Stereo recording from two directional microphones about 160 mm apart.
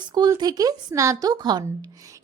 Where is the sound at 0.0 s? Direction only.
25° right (ahead or behind).